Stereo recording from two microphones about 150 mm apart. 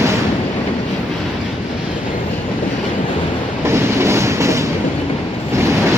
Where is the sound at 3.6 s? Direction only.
20° right (ahead or behind).